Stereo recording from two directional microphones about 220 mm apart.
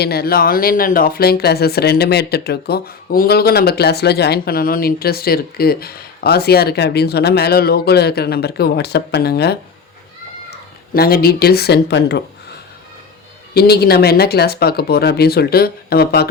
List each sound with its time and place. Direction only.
0.0 s speech: 45° left (ahead or behind)
10.9 s speech: 45° left (ahead or behind)
13.5 s speech: 45° left (ahead or behind)